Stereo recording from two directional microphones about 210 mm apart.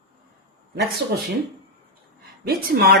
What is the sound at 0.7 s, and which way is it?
Speech, 50° right (ahead or behind).